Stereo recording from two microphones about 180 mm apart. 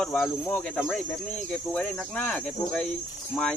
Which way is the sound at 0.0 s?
5° left (ahead or behind).